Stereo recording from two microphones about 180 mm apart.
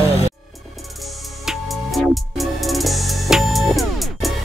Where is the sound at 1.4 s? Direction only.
Centre (ahead or behind).